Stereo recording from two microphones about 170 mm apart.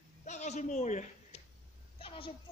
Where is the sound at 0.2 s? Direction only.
45° left (ahead or behind).